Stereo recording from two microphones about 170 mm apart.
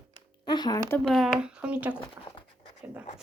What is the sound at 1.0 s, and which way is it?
Speech, centre (ahead or behind).